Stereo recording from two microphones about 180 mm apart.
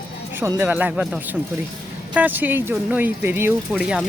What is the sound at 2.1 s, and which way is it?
Speech, 10° right (ahead or behind).